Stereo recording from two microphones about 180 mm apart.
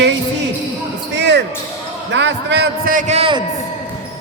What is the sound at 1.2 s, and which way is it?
Basketball bounce, 75° right (ahead or behind).